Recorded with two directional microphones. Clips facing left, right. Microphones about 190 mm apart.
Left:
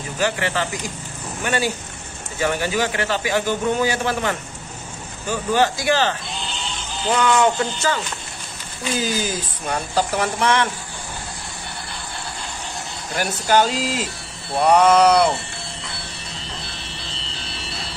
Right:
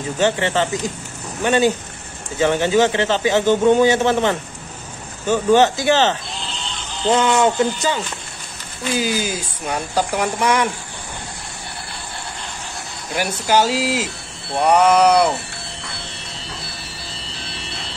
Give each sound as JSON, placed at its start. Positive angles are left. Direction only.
{"t": 0.2, "sound": "a man's voice", "side_deg": -25}
{"t": 9.0, "sound": "speech", "side_deg": -10}
{"t": 13.1, "sound": "speech", "side_deg": -5}